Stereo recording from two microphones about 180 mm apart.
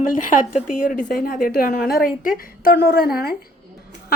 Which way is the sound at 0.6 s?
45° left (ahead or behind).